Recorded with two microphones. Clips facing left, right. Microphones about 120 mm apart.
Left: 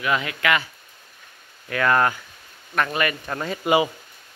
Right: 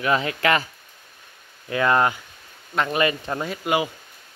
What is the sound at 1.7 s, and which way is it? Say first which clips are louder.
Speech: even; 20° right (ahead or behind).